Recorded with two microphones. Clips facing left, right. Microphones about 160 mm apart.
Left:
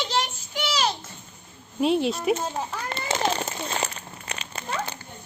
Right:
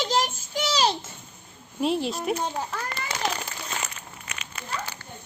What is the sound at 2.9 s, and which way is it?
Crumpling, 25° left (ahead or behind).